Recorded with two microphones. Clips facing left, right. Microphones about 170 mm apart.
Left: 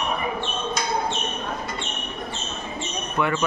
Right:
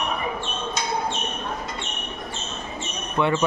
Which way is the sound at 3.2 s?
25° right (ahead or behind).